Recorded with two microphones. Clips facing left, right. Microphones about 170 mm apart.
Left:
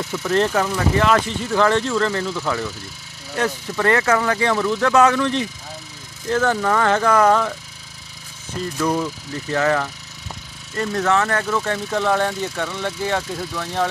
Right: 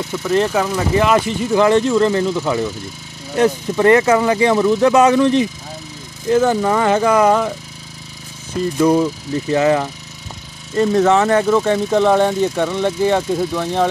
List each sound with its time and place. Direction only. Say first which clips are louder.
0.1 s speech: right 2 dB; 5° right (ahead or behind)
8.7 s speech: right 8 dB; 15° right (ahead or behind)